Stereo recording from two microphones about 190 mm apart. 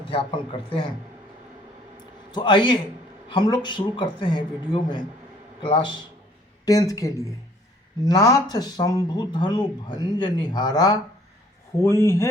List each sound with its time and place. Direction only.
0.0 s speech: 25° left (ahead or behind)
2.3 s a man's voice: 25° left (ahead or behind)